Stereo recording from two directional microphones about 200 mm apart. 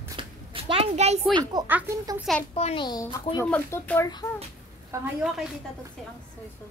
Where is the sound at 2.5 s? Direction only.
30° left (ahead or behind); by 4.1 s 10° left (ahead or behind).